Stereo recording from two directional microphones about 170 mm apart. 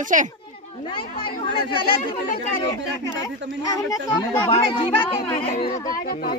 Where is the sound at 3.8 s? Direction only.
20° left (ahead or behind).